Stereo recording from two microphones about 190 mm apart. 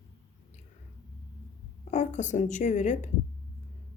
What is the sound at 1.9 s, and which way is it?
Speech, 40° left (ahead or behind).